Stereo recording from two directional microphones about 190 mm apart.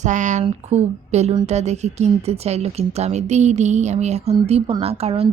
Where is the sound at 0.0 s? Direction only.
40° right (ahead or behind).